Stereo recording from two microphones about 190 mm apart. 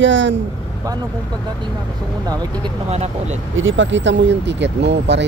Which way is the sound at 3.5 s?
85° right.